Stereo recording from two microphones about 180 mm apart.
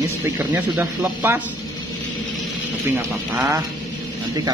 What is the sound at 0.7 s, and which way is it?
Speech, 10° right (ahead or behind).